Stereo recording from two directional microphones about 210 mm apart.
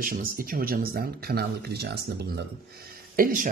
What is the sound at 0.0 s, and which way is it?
Speech, 45° right (ahead or behind).